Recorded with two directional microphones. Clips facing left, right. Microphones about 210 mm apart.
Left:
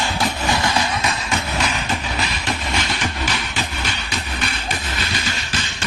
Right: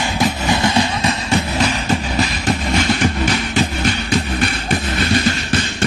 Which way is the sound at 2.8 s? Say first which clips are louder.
Right 8 dB; 50° right (ahead or behind).